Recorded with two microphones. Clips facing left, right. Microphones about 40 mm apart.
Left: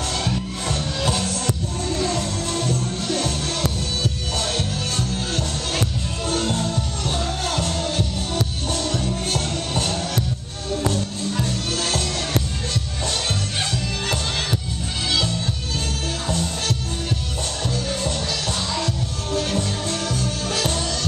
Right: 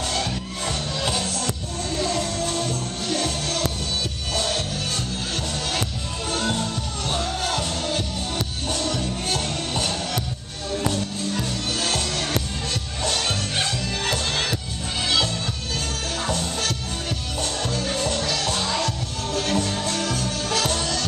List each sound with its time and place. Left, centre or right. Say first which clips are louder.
0.1 s music: left 2 dB; centre
2.0 s music: even; centre
7.1 s music: right 1 dB; centre
8.9 s music: left 2 dB; centre
13.1 s music: even; centre
17.8 s music: right 1 dB; centre